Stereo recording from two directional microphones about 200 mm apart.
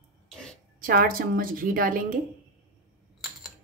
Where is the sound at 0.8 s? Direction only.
45° right (ahead or behind).